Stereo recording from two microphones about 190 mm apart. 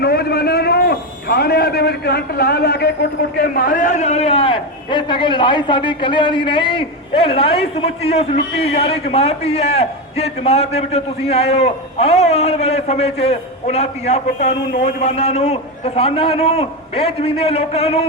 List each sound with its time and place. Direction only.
0.0 s a man's voice: 55° left (ahead or behind); by 18.0 s 30° left (ahead or behind)